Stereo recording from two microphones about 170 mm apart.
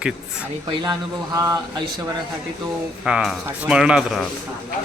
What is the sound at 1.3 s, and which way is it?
Speech, 20° right (ahead or behind).